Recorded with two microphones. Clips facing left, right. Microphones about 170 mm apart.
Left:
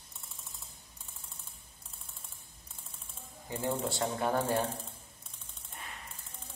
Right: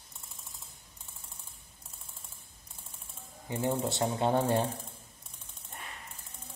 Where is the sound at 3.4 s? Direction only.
20° right (ahead or behind).